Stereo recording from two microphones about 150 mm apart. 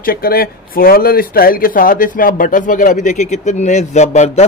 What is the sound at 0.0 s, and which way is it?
Speech, 80° left.